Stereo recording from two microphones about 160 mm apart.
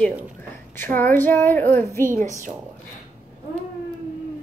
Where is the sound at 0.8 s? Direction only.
10° left (ahead or behind).